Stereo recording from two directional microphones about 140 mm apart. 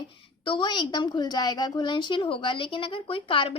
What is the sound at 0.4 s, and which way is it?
A woman's voice, 35° left (ahead or behind).